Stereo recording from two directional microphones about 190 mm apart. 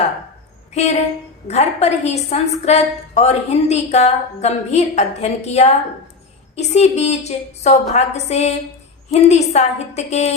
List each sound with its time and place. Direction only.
0.7 s a woman's voice: 35° left (ahead or behind)